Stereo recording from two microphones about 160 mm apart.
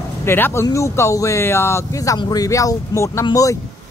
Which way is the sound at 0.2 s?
15° left (ahead or behind).